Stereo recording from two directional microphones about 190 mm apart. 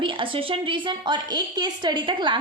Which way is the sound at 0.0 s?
25° right (ahead or behind).